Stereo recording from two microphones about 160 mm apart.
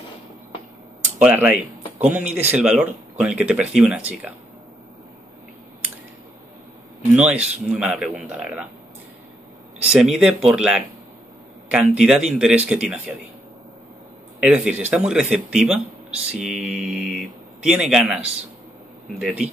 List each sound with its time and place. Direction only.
1.2 s speech: 10° right (ahead or behind)
7.2 s speech: 5° right (ahead or behind)
9.9 s speech: centre (ahead or behind)
14.4 s speech: 10° right (ahead or behind)